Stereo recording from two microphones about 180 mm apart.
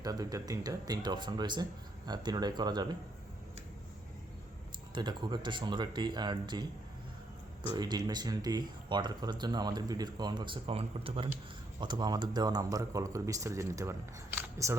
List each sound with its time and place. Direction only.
0.0 s speech: 20° right (ahead or behind)
4.9 s speech: 25° right (ahead or behind)
7.7 s speech: 25° right (ahead or behind)